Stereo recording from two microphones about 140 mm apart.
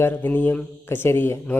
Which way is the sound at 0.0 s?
10° left (ahead or behind).